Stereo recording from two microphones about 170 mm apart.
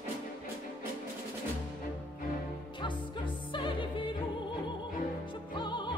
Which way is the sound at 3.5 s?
30° left (ahead or behind).